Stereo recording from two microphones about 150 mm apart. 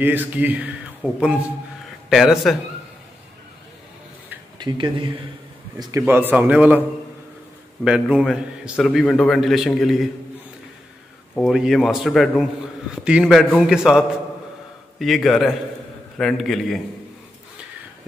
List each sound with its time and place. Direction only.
0.0 s a man's voice: 10° right (ahead or behind)
4.6 s speech: 30° right (ahead or behind)
5.8 s a man's voice: 20° right (ahead or behind)
7.8 s a man's voice: 5° right (ahead or behind)
11.3 s a man's voice: centre (ahead or behind)